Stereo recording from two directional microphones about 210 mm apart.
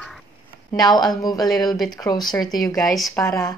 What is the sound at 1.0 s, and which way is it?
Speech, 20° left (ahead or behind).